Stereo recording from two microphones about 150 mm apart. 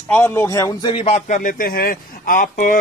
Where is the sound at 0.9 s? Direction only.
45° left (ahead or behind); by 2.8 s 65° left (ahead or behind).